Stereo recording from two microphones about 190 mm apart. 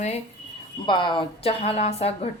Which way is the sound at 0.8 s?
25° left (ahead or behind).